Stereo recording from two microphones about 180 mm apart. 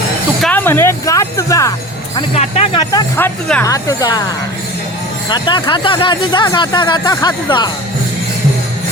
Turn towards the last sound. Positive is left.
turn(degrees=25)  # may be behind; listen again after turning